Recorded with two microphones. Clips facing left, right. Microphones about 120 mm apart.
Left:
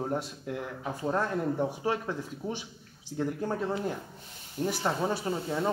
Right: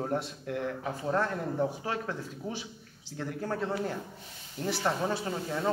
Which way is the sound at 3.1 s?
20° left (ahead or behind).